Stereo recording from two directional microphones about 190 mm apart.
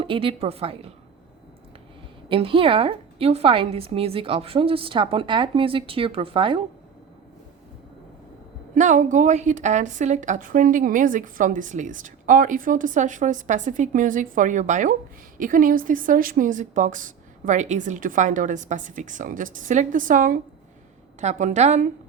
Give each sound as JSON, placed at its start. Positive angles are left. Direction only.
{"t": 0.0, "sound": "a woman's voice", "side_deg": -30}
{"t": 2.3, "sound": "a woman's voice", "side_deg": -30}
{"t": 8.7, "sound": "a woman's voice", "side_deg": -40}